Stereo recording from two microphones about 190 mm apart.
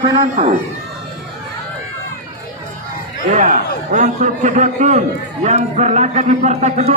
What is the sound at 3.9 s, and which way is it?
A man's voice, 40° right (ahead or behind).